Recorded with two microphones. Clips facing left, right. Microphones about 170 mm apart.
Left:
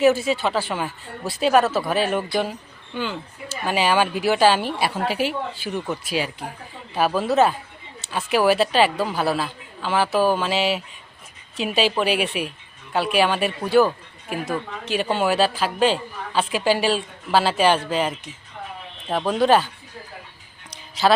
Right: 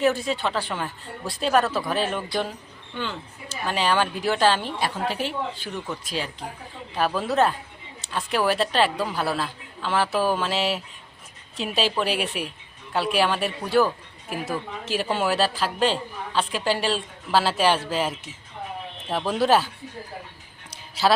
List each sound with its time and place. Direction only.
0.0 s a woman's voice: 5° left (ahead or behind)